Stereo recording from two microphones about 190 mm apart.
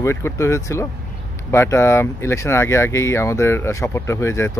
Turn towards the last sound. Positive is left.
turn(degrees=15)  # may be behind; listen again after turning